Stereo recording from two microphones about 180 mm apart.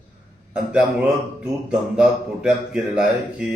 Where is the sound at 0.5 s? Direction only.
5° right (ahead or behind).